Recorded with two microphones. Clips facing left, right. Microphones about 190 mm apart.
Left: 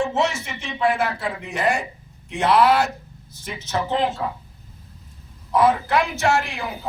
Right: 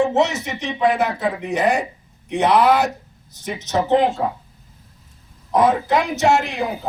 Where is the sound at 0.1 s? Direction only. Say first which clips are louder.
Right 4 dB; 20° right (ahead or behind).